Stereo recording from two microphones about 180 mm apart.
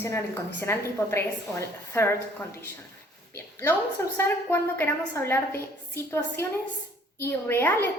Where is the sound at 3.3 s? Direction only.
15° left (ahead or behind).